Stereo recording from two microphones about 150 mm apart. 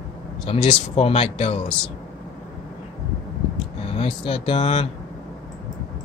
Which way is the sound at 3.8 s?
40° left (ahead or behind).